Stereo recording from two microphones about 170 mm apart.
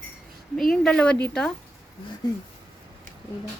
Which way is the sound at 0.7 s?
5° left (ahead or behind).